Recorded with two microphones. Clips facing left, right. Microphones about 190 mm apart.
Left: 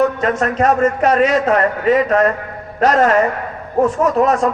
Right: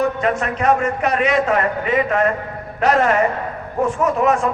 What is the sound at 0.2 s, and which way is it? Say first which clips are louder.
A man's voice: left 4 dB; 40° left (ahead or behind).